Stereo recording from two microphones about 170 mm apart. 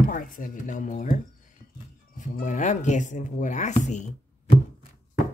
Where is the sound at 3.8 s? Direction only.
45° left (ahead or behind).